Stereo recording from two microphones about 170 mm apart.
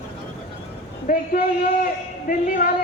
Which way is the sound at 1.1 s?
55° left (ahead or behind).